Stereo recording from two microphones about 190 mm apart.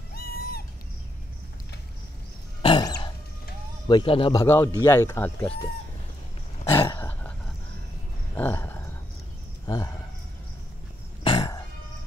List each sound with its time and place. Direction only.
0.1 s bird: 50° left (ahead or behind)
2.6 s cough: 25° left (ahead or behind)
3.8 s speech: 25° left (ahead or behind)
6.6 s a sound: 10° left (ahead or behind)
8.4 s a sound: 10° left (ahead or behind)
11.2 s cough: 25° left (ahead or behind)